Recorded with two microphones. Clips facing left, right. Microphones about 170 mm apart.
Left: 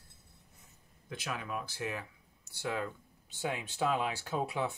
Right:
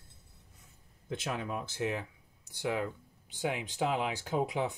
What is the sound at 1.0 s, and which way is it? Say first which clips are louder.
Speech: right 4 dB; 25° right (ahead or behind).